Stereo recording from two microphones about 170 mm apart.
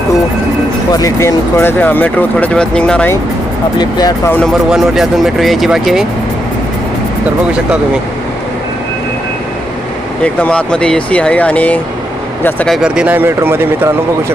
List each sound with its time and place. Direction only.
0.9 s speech: 20° left (ahead or behind)
3.8 s speech: 25° left (ahead or behind)
4.3 s speech: 5° left (ahead or behind)
10.2 s speech: 5° left (ahead or behind); by 14.3 s 15° right (ahead or behind)